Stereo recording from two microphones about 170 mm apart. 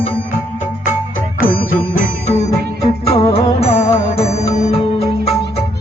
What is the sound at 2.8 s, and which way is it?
Music, 35° left (ahead or behind).